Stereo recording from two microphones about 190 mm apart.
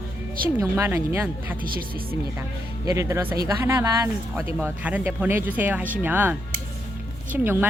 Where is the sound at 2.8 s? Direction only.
15° right (ahead or behind).